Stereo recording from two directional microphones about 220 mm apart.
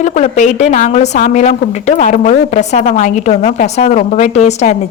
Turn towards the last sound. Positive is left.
turn(degrees=30)  # may be behind; listen again after turning